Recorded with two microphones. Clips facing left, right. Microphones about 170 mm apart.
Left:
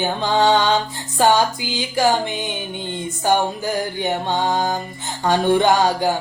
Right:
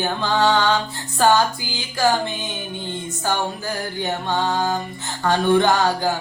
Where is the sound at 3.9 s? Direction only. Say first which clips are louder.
Left 2 dB; 20° left (ahead or behind).